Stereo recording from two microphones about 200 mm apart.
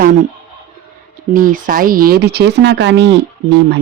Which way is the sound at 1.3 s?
45° right (ahead or behind).